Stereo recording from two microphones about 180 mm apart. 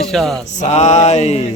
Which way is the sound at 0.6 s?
40° left (ahead or behind).